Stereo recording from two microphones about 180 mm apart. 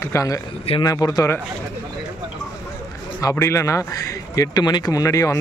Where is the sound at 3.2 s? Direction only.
15° left (ahead or behind).